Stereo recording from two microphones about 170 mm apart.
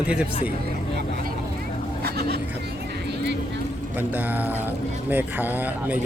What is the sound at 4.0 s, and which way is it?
Speech, 10° right (ahead or behind).